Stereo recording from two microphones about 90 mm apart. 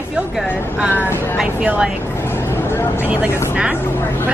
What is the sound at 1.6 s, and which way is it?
Speech, 15° right (ahead or behind).